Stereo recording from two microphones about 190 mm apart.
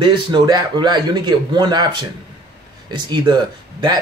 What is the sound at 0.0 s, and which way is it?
Speech, 25° right (ahead or behind).